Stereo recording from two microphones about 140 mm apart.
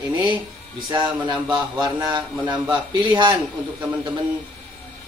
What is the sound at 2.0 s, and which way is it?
Speech, 30° right (ahead or behind).